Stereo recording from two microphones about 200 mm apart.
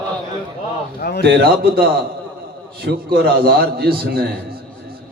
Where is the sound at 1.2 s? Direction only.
50° right (ahead or behind).